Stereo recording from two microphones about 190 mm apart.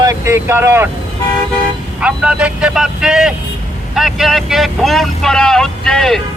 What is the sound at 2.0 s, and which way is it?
Speech, 5° right (ahead or behind).